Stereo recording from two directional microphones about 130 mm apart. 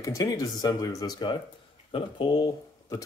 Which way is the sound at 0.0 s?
25° left (ahead or behind).